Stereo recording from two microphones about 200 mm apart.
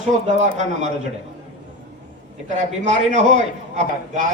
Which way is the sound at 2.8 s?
35° right (ahead or behind).